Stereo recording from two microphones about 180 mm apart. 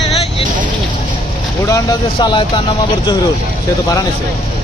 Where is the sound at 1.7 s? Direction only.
20° left (ahead or behind).